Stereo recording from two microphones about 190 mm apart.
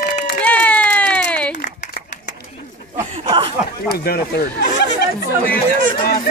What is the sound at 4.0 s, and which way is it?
Speech, 55° left (ahead or behind).